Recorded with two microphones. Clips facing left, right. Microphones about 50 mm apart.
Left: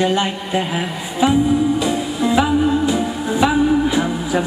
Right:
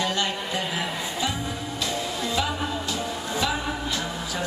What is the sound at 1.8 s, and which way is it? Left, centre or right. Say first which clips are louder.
Music: left 9 dB; centre.